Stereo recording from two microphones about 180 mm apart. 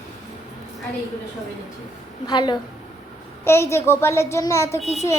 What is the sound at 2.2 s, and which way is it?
Speech, 25° left (ahead or behind).